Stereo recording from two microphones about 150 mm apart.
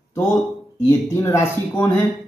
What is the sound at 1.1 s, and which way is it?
Speech, 20° left (ahead or behind).